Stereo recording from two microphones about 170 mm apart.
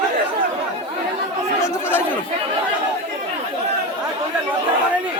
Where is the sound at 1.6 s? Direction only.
10° left (ahead or behind).